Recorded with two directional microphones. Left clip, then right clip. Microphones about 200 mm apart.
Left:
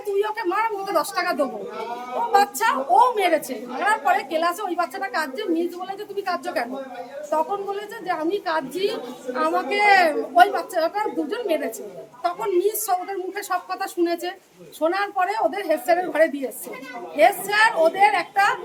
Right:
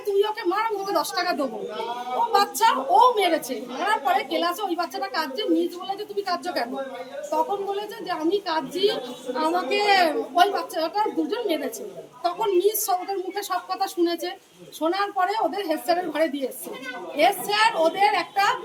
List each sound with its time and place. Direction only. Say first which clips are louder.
0.2 s a woman's voice: left 1 dB; centre (ahead or behind)